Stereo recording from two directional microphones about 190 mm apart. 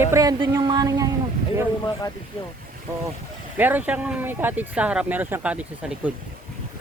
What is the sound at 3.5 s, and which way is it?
Speech, 10° right (ahead or behind).